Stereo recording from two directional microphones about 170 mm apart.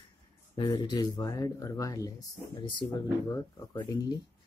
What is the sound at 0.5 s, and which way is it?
Speech, 25° left (ahead or behind).